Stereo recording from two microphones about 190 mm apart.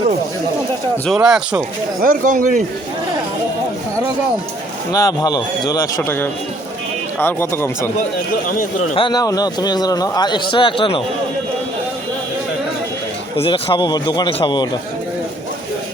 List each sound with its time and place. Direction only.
1.0 s speech: 5° right (ahead or behind)
2.0 s speech: 45° right (ahead or behind)
4.9 s a man's voice: 20° left (ahead or behind)
8.4 s a man's voice: 45° left (ahead or behind)
9.0 s speech: 20° left (ahead or behind)
13.3 s speech: 25° left (ahead or behind)